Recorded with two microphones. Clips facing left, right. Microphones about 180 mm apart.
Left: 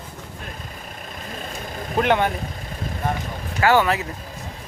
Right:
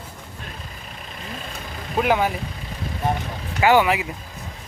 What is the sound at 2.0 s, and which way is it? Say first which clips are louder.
Speech: left 1 dB; 5° right (ahead or behind).